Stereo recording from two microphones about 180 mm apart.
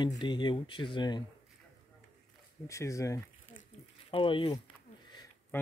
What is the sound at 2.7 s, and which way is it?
Speech, 15° left (ahead or behind).